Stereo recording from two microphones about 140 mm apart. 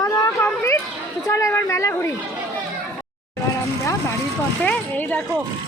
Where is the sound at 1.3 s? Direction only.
20° left (ahead or behind).